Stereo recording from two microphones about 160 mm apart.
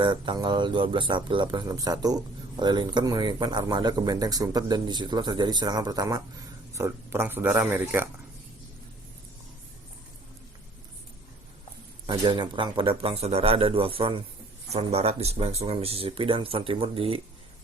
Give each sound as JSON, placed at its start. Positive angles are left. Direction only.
{"t": 0.0, "sound": "speech", "side_deg": -30}
{"t": 12.0, "sound": "speech", "side_deg": -25}